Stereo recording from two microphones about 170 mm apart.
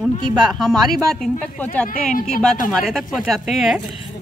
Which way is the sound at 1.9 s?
55° left (ahead or behind).